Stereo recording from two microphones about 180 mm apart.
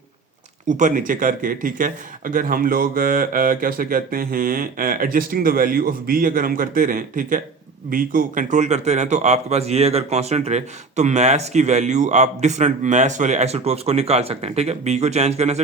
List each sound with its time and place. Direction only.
0.8 s a man's voice: 45° right (ahead or behind)